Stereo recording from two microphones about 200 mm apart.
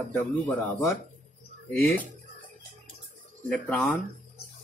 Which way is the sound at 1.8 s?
10° left (ahead or behind).